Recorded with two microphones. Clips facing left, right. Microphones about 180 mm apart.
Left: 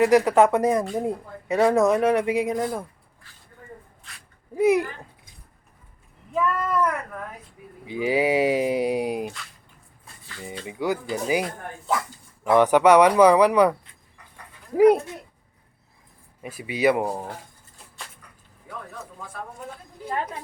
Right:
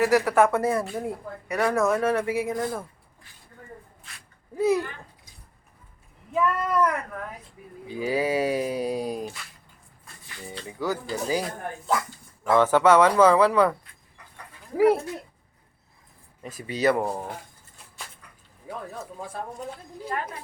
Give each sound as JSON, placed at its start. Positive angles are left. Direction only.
{"t": 0.0, "sound": "speech", "side_deg": 20}
{"t": 4.5, "sound": "speech", "side_deg": 15}
{"t": 6.3, "sound": "speech", "side_deg": 0}
{"t": 7.9, "sound": "speech", "side_deg": 15}
{"t": 10.7, "sound": "speech", "side_deg": 15}
{"t": 12.5, "sound": "speech", "side_deg": 15}
{"t": 14.8, "sound": "speech", "side_deg": 20}
{"t": 16.4, "sound": "speech", "side_deg": 10}
{"t": 18.7, "sound": "a sound", "side_deg": -30}